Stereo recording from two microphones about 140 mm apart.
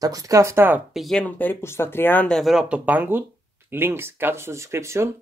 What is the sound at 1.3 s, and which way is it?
Speech, 15° left (ahead or behind).